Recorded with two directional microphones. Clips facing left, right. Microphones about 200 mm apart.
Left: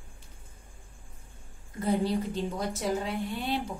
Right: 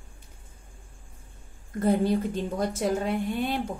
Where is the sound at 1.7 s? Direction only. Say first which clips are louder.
Right 4 dB; 50° right (ahead or behind).